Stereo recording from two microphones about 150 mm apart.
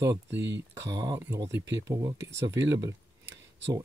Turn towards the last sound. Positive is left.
turn(degrees=-20)  # may be behind; listen again after turning